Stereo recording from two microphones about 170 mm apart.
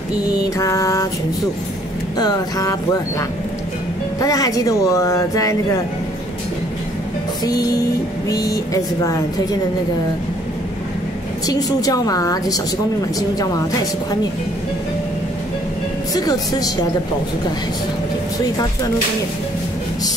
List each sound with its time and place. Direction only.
0.6 s mantra: 20° left (ahead or behind)
2.1 s speech: 20° left (ahead or behind)
7.4 s speech: 20° left (ahead or behind)
11.4 s speech: 20° left (ahead or behind)
16.2 s speech: 20° left (ahead or behind)